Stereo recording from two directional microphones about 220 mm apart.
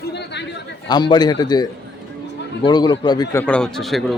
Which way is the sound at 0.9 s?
20° left (ahead or behind).